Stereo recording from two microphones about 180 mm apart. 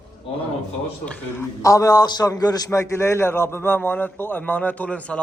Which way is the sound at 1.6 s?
20° left (ahead or behind).